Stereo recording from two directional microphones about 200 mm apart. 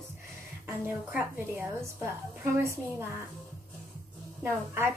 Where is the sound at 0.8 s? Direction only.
10° right (ahead or behind).